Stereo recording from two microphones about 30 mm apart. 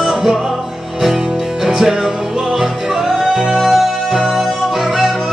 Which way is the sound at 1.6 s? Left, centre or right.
Centre.